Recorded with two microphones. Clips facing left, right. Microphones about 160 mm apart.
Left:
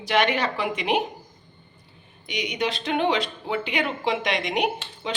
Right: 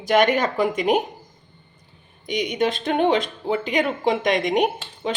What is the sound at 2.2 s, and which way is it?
Speech, 45° right (ahead or behind).